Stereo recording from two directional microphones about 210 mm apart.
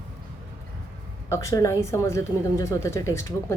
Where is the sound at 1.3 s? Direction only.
15° left (ahead or behind).